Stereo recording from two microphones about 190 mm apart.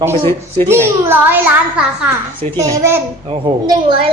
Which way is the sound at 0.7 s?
15° right (ahead or behind).